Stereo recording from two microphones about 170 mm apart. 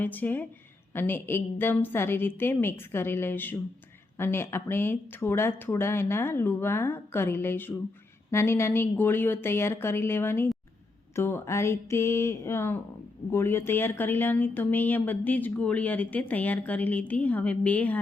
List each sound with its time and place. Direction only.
0.0 s speech: 10° left (ahead or behind)